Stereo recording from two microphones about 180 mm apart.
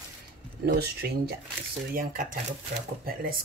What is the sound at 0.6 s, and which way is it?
Speech, 60° right (ahead or behind).